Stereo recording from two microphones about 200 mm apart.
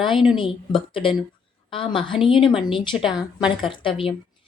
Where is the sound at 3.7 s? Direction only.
25° left (ahead or behind).